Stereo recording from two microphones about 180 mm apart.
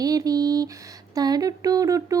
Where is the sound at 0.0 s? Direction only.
20° right (ahead or behind).